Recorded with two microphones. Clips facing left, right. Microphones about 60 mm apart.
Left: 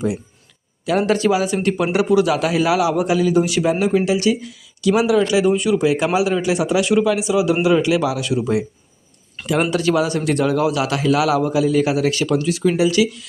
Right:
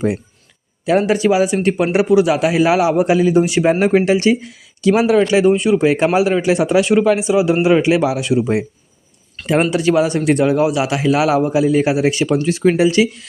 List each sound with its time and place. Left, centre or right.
1.0 s a man's voice: right
3.7 s a man's voice: right